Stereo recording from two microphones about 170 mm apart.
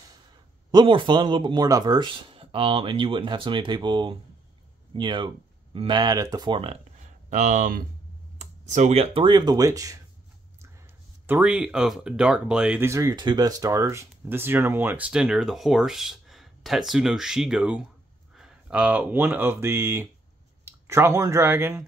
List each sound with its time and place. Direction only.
0.7 s speech: 30° right (ahead or behind)
11.2 s speech: 10° right (ahead or behind)